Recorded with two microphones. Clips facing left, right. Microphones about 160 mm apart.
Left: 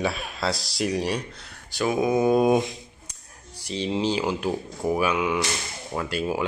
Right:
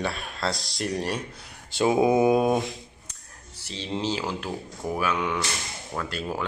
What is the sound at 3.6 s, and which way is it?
Speech, 15° left (ahead or behind).